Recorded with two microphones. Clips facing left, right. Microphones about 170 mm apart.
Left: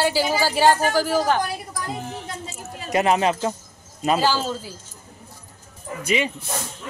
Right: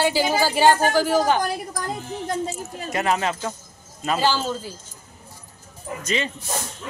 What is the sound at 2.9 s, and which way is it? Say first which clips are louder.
Speech: left 4 dB; 20° left (ahead or behind).